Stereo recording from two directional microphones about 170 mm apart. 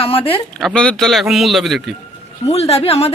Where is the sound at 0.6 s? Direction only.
5° left (ahead or behind).